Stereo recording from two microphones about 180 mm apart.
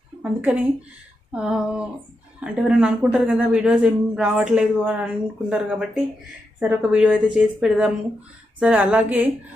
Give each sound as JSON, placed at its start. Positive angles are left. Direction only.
{"t": 0.2, "sound": "a woman's voice", "side_deg": -10}